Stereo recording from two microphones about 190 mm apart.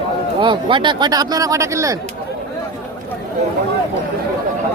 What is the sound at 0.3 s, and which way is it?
Speech, 25° right (ahead or behind).